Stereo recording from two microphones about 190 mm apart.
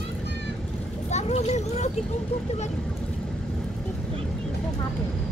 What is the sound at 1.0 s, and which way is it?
Speech, 35° left (ahead or behind).